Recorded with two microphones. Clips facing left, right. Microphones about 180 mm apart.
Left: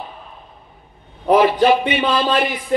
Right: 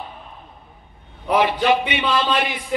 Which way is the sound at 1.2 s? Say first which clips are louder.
Left 5 dB; 45° left (ahead or behind).